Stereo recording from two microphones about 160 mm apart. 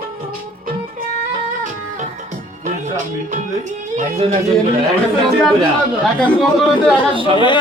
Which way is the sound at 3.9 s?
45° right (ahead or behind).